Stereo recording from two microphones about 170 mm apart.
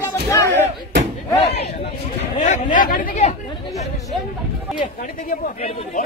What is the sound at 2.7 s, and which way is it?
Speech, 55° left (ahead or behind).